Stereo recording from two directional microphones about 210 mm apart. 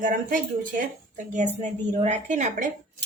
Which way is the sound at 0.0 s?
40° right (ahead or behind).